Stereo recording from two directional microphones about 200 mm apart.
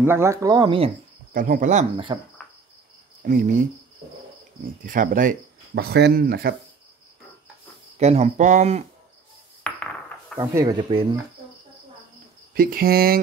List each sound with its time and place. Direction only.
0.0 s speech: 10° right (ahead or behind)
1.3 s speech: 40° right (ahead or behind)
3.2 s speech: 40° right (ahead or behind)
4.8 s speech: 40° right (ahead or behind)
5.8 s speech: 55° right (ahead or behind)
8.0 s speech: 35° right (ahead or behind)
9.6 s a sound: 5° left (ahead or behind)
10.3 s speech: 20° right (ahead or behind)
12.5 s speech: 45° right (ahead or behind)